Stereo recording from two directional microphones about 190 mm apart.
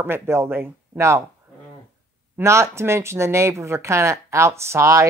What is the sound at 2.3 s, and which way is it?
Speech, 15° right (ahead or behind).